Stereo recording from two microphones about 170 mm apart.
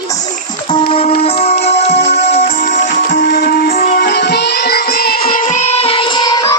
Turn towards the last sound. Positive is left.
turn(degrees=20)  # may be behind; listen again after turning